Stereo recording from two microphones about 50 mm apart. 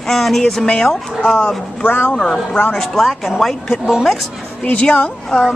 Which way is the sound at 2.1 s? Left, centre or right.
Centre.